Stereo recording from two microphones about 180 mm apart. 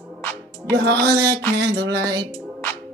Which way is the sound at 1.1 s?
20° right (ahead or behind).